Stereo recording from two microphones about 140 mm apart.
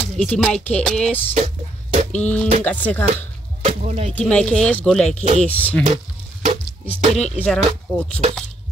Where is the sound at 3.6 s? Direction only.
50° right (ahead or behind).